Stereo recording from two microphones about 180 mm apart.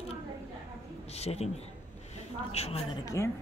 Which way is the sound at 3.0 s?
15° left (ahead or behind).